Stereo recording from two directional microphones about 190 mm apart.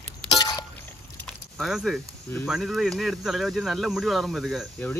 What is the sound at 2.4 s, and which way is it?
Speech, centre (ahead or behind).